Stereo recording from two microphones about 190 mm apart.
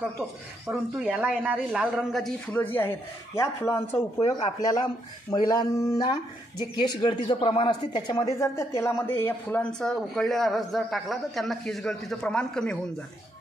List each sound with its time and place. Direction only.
0.7 s speech: 5° right (ahead or behind); by 4.8 s 20° left (ahead or behind)
5.3 s a sound: 20° left (ahead or behind)
6.7 s speech: 25° left (ahead or behind); by 12.7 s 5° left (ahead or behind)